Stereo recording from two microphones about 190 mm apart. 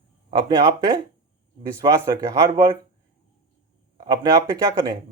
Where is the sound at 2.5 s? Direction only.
25° right (ahead or behind).